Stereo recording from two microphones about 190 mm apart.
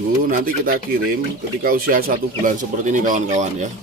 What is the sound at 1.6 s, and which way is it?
Speech, 50° right (ahead or behind).